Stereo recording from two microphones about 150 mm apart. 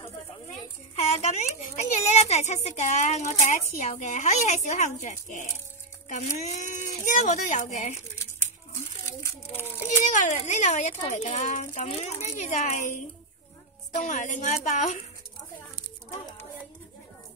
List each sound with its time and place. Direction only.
0.9 s speech: 45° left (ahead or behind)
10.1 s speech: 55° left (ahead or behind)
13.9 s speech: 55° left (ahead or behind)